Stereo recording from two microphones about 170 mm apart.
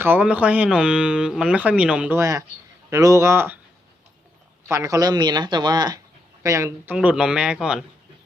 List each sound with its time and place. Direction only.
0.0 s speech: 10° right (ahead or behind)
4.7 s speech: 20° right (ahead or behind)
6.9 s a man's voice: 5° right (ahead or behind)